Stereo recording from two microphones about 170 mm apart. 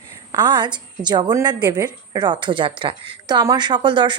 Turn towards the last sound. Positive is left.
turn(degrees=-30)  # may be behind; listen again after turning